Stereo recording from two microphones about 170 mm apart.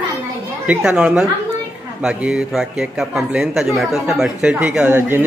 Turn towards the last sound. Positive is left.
turn(degrees=-10)  # may be behind; listen again after turning